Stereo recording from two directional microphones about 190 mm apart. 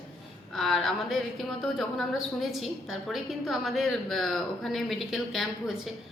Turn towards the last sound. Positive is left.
turn(degrees=0)  # may be behind; listen again after turning